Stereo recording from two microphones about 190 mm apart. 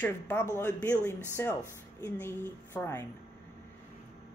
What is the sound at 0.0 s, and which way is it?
Speech, 10° left (ahead or behind).